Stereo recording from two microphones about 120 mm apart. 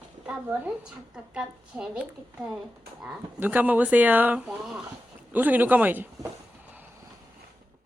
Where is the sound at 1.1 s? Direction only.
10° right (ahead or behind).